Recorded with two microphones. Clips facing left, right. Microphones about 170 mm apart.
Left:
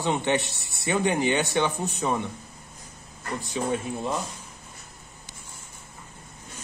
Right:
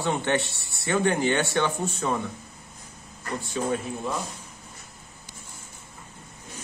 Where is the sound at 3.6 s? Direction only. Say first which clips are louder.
Even; 15° left (ahead or behind).